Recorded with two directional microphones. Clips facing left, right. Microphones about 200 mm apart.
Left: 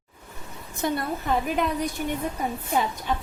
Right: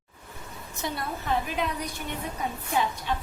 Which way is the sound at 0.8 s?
50° left (ahead or behind).